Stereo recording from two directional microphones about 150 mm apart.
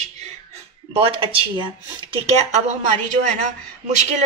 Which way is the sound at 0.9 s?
35° right (ahead or behind).